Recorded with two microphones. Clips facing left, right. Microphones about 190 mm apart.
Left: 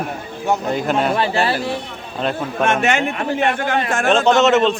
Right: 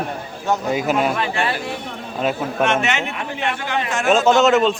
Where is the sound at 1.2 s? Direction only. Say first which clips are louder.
Left 4 dB; 35° left (ahead or behind).